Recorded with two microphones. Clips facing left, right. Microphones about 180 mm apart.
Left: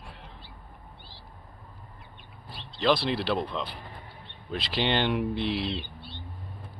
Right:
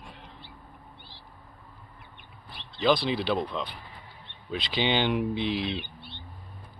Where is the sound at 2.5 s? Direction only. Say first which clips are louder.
Left 3 dB; 55° right (ahead or behind).